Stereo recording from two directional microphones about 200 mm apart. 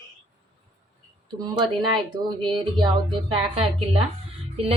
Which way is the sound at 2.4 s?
25° right (ahead or behind).